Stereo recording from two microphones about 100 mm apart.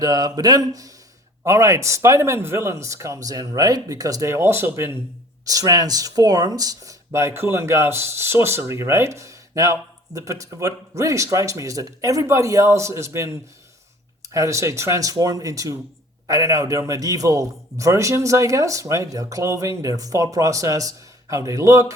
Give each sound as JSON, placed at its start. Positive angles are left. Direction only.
{"t": 0.0, "sound": "a man's voice", "side_deg": -40}
{"t": 5.5, "sound": "a man's voice", "side_deg": -35}